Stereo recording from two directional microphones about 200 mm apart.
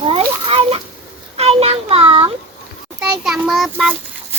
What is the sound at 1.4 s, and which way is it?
Child singing, 30° right (ahead or behind).